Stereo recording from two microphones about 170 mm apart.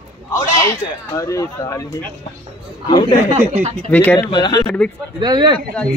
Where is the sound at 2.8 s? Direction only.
25° left (ahead or behind).